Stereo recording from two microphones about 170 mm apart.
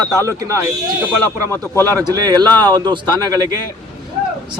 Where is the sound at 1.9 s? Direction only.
20° right (ahead or behind).